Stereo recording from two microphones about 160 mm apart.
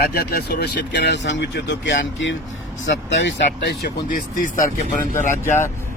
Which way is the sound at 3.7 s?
90° left.